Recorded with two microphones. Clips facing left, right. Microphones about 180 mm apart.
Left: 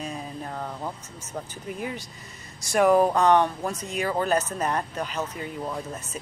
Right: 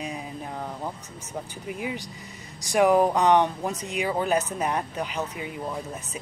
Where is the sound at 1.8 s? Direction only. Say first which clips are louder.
Right 2 dB; 10° right (ahead or behind).